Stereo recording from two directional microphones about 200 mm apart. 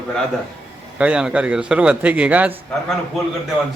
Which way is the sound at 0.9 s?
5° right (ahead or behind).